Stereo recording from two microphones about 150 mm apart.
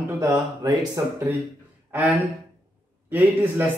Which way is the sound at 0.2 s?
25° right (ahead or behind).